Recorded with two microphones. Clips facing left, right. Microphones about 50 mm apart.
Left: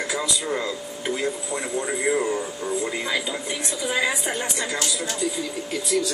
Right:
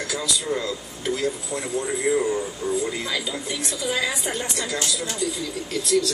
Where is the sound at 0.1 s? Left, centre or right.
Left.